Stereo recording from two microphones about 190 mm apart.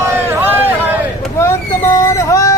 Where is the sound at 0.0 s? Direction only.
15° right (ahead or behind).